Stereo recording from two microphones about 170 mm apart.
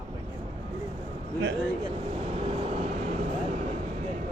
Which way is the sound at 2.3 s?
35° right (ahead or behind).